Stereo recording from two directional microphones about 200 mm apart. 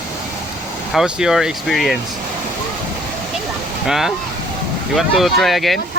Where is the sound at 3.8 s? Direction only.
Centre (ahead or behind).